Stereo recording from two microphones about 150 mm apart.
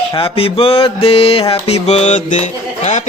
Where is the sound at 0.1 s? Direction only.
40° left (ahead or behind).